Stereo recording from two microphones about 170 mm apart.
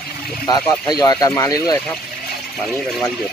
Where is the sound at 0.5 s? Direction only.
25° left (ahead or behind).